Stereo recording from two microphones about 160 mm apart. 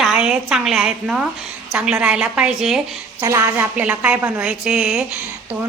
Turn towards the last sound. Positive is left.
turn(degrees=-5)  # may be behind; listen again after turning